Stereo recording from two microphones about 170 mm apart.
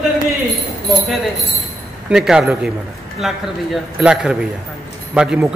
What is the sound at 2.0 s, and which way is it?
A man's voice, 5° right (ahead or behind).